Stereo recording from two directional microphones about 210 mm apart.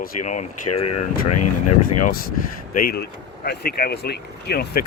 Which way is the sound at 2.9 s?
50° left (ahead or behind).